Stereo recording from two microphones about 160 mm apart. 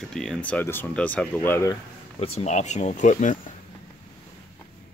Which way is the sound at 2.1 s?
40° left (ahead or behind).